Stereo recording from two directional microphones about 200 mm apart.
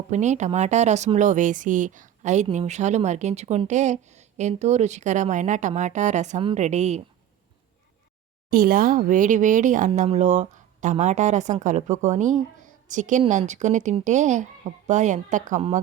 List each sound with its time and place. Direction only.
0.1 s speech: 35° right (ahead or behind)
8.4 s speech: 45° right (ahead or behind)